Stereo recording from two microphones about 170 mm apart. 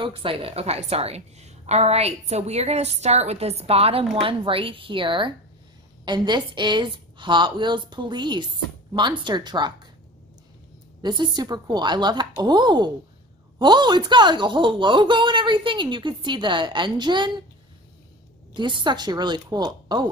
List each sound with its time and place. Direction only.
0.0 s a woman's voice: 30° right (ahead or behind)
11.0 s speech: 25° right (ahead or behind)
18.5 s speech: 30° right (ahead or behind)